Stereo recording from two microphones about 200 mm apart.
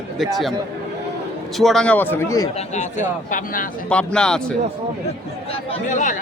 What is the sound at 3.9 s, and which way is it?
Speech, 5° left (ahead or behind).